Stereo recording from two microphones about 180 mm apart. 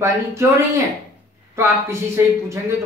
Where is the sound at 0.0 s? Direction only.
15° right (ahead or behind).